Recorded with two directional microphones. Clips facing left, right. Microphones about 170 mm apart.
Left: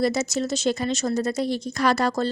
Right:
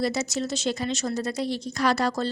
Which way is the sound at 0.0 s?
50° left (ahead or behind).